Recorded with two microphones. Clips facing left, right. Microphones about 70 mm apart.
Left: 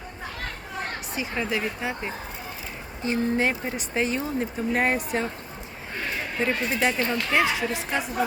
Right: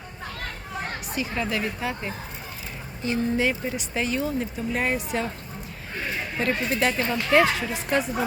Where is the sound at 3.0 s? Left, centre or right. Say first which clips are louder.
Even; left.